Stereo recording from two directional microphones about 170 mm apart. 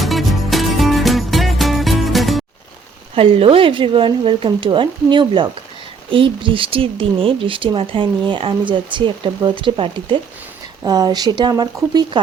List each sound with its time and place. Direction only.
0.0 s music: centre (ahead or behind)
3.2 s speech: 35° right (ahead or behind)